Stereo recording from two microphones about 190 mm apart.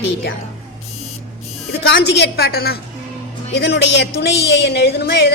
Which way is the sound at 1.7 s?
60° left (ahead or behind).